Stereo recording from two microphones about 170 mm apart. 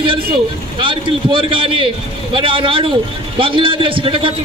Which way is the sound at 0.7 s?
30° right (ahead or behind).